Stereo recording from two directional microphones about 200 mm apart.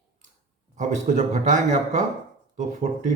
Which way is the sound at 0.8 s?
35° right (ahead or behind).